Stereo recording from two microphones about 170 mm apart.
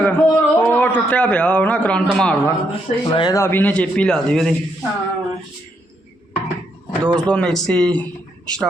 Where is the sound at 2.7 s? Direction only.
30° left (ahead or behind).